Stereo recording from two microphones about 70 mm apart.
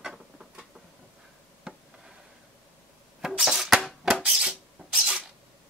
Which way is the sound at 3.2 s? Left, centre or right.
Centre.